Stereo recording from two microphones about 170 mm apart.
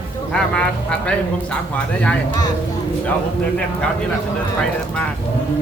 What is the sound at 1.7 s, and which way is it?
Speech, 5° left (ahead or behind).